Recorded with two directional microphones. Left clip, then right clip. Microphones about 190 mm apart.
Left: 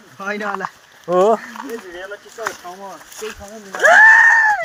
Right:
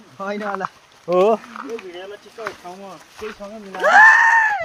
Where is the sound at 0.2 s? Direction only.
20° right (ahead or behind).